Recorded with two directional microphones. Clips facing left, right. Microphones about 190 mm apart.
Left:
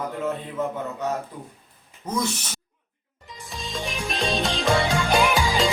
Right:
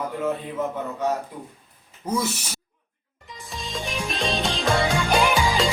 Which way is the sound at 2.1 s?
10° right (ahead or behind).